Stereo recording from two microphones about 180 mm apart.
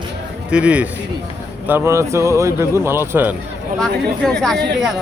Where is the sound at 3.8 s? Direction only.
5° left (ahead or behind).